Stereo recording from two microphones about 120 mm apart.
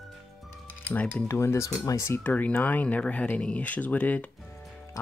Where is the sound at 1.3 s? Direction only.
25° left (ahead or behind).